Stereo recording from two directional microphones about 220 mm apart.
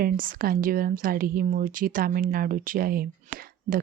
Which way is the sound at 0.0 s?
40° right (ahead or behind).